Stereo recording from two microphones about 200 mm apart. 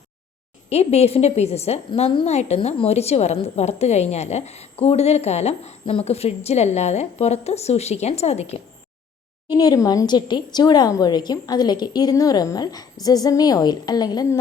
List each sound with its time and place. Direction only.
0.7 s a woman's voice: 30° left (ahead or behind)
9.5 s speech: 20° left (ahead or behind)